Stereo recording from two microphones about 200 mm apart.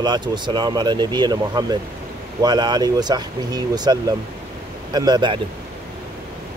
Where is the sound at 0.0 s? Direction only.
20° right (ahead or behind).